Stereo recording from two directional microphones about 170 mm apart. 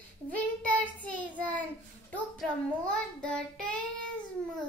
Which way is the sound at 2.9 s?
5° left (ahead or behind).